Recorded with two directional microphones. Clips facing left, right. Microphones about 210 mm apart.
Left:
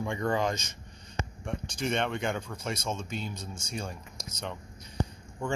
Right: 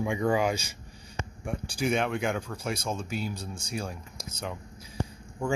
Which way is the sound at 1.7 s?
5° right (ahead or behind).